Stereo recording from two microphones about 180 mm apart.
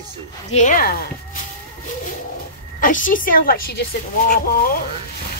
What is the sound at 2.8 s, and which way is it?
A woman's voice, 45° left (ahead or behind).